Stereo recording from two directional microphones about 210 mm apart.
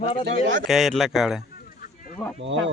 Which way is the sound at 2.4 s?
60° right (ahead or behind).